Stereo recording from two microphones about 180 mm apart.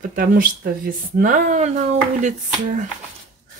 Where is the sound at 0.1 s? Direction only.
50° right (ahead or behind).